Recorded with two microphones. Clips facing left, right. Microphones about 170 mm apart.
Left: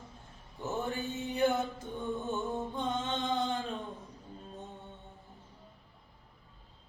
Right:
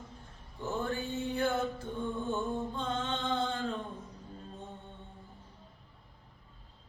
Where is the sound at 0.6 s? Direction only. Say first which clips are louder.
Even; 15° left (ahead or behind).